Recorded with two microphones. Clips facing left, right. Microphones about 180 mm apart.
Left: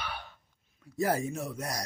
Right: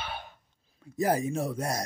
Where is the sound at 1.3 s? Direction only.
30° right (ahead or behind).